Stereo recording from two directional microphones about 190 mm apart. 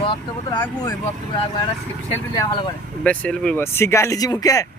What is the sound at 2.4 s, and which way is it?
Speech, 25° left (ahead or behind).